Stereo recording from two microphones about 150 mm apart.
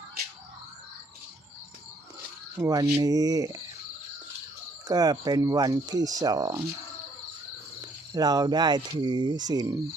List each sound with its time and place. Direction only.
2.6 s speech: 25° right (ahead or behind)
4.9 s speech: 25° right (ahead or behind)
7.8 s speech: 25° right (ahead or behind)